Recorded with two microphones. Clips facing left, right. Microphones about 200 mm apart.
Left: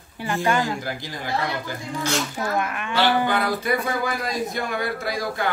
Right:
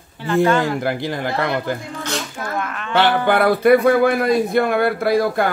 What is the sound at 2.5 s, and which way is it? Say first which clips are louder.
Speech: right 5 dB; 15° left (ahead or behind).